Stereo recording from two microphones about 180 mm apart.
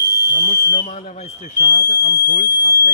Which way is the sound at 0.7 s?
35° left (ahead or behind).